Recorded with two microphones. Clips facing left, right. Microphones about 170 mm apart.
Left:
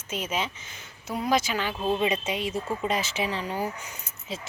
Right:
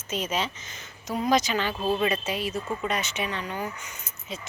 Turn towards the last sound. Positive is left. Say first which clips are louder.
# left 1 dB
turn(degrees=30)  # may be behind; listen again after turning